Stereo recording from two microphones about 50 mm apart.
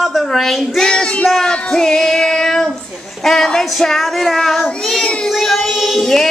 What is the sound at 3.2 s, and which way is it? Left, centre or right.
Speech, centre.